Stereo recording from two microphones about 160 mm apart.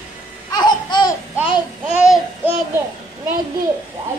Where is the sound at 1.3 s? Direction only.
10° right (ahead or behind).